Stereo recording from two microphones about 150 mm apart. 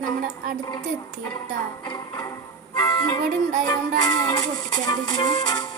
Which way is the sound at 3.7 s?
30° left (ahead or behind).